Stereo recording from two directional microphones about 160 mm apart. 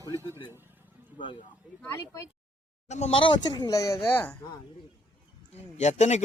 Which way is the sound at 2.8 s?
45° left (ahead or behind).